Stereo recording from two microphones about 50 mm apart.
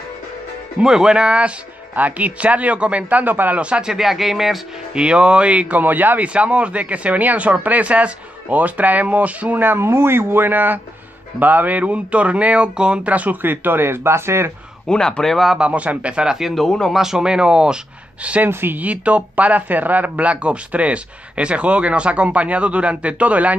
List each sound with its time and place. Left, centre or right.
0.7 s speech: centre; by 3.6 s right
3.6 s speech: right
3.9 s speech: centre
4.9 s speech: right
6.2 s speech: right
13.4 s speech: right
14.9 s a man's voice: centre
15.6 s speech: right
16.5 s a man's voice: centre
16.9 s speech: centre; by 18.5 s right
18.5 s speech: right
18.8 s speech: right